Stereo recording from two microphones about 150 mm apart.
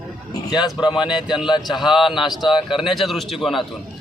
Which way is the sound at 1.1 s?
5° right (ahead or behind).